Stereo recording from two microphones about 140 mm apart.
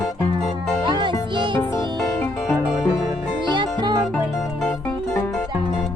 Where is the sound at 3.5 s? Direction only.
30° right (ahead or behind).